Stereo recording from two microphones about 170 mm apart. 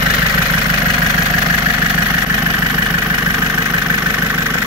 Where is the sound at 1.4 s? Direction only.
15° right (ahead or behind).